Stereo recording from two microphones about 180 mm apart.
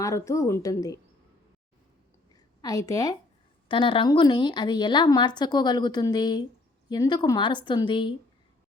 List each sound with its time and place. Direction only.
0.0 s a woman's voice: 15° left (ahead or behind)
2.3 s a sound: 20° left (ahead or behind)
3.7 s a woman's voice: 30° left (ahead or behind)